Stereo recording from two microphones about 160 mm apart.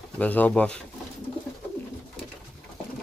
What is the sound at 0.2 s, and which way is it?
Speech, 10° left (ahead or behind).